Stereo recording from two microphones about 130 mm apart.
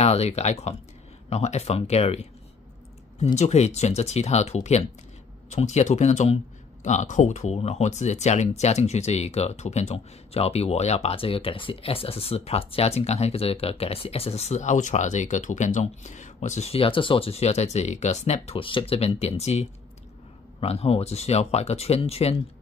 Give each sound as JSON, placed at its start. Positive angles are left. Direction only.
{"t": 0.0, "sound": "speech", "side_deg": 55}
{"t": 3.3, "sound": "speech", "side_deg": 60}